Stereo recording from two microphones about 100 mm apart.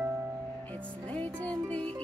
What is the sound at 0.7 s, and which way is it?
Music, 15° left (ahead or behind).